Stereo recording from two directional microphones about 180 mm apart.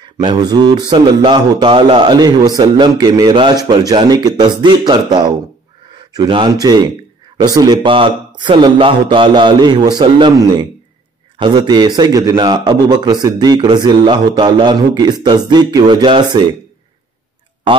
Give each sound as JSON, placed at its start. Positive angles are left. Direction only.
{"t": 0.0, "sound": "a man's voice", "side_deg": -25}